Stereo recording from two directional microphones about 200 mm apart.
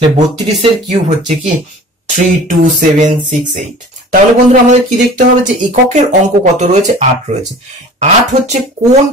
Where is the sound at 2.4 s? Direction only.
40° right (ahead or behind).